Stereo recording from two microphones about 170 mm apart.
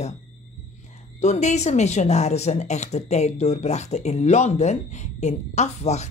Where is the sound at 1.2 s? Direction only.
45° left (ahead or behind).